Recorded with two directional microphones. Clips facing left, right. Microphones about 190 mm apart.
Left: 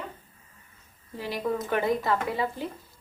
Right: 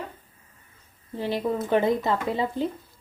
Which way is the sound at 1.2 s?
25° right (ahead or behind).